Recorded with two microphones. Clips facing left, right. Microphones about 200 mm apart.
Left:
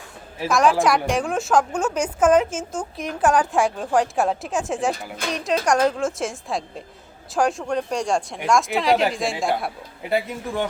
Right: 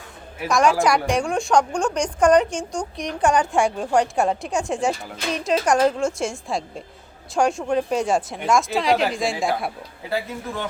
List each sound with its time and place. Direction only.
0.4 s a woman's voice: centre (ahead or behind)
10.1 s speech: 15° left (ahead or behind)